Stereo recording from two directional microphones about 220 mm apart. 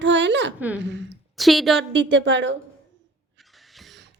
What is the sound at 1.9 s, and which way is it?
Speech, 55° right (ahead or behind).